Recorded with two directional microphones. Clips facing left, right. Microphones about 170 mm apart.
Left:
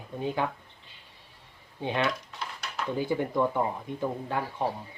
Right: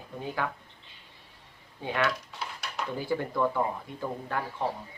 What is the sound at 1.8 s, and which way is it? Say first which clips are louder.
Speech: left 1 dB; 25° left (ahead or behind).